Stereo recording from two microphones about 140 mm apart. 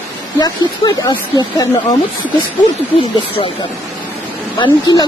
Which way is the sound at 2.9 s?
40° left (ahead or behind).